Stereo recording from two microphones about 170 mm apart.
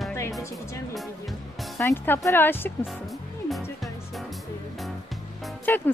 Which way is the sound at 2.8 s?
Centre (ahead or behind).